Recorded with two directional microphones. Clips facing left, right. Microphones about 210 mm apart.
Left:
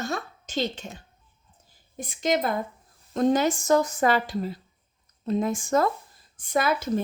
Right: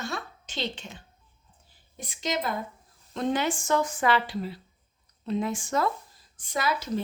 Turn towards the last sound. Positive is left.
turn(degrees=50)  # may be behind; listen again after turning